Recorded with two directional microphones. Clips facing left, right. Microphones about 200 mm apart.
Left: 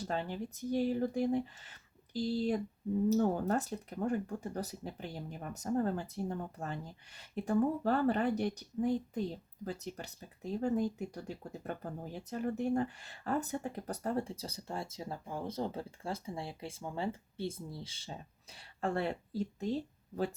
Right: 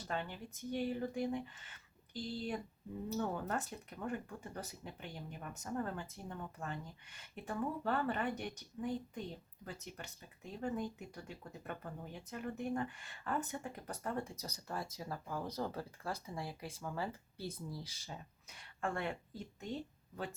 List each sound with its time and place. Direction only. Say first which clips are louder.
0.1 s speech: left 3 dB; 35° left (ahead or behind)